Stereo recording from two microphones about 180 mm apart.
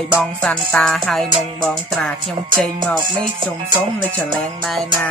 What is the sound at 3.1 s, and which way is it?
Music, 25° right (ahead or behind).